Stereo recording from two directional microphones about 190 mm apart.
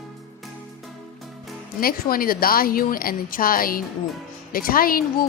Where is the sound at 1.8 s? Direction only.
50° left (ahead or behind).